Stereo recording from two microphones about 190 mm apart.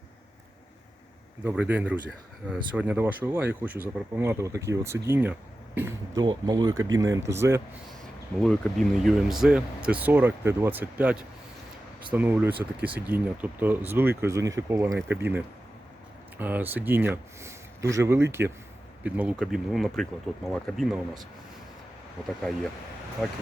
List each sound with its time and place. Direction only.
1.5 s speech: 10° right (ahead or behind)
8.4 s speech: centre (ahead or behind)